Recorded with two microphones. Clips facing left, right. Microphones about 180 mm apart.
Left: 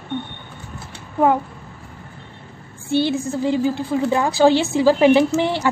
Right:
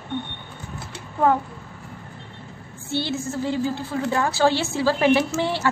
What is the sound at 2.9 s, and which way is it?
A woman's voice, 15° left (ahead or behind).